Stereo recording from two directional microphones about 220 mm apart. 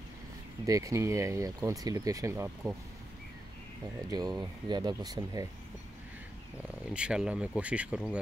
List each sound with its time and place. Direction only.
0.7 s speech: 15° right (ahead or behind)
4.4 s speech: 20° right (ahead or behind)
6.9 s speech: 5° right (ahead or behind)